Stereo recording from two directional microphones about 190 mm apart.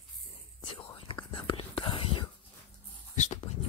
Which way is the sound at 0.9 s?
25° left (ahead or behind).